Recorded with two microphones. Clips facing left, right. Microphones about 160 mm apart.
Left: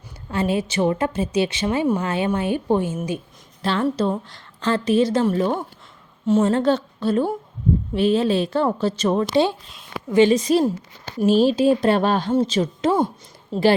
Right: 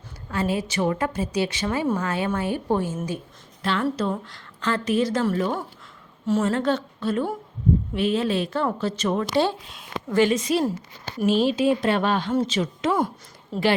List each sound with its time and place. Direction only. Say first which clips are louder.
0.3 s a woman's voice: left 3 dB; 25° left (ahead or behind)
3.6 s a woman's voice: left 3 dB; 30° left (ahead or behind)
13.5 s a woman's voice: left 5 dB; 25° left (ahead or behind)